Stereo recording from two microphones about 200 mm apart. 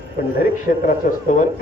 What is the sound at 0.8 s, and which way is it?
Speech, 40° left (ahead or behind).